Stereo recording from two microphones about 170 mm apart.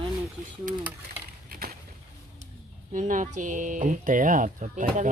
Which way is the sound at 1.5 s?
60° right (ahead or behind).